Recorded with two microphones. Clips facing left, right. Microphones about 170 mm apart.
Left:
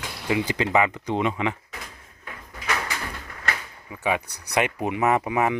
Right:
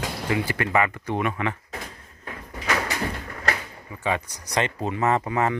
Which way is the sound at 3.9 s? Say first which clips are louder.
Left 1 dB; 10° left (ahead or behind).